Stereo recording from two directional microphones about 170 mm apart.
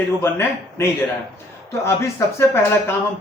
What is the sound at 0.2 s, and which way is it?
Speech, 15° left (ahead or behind).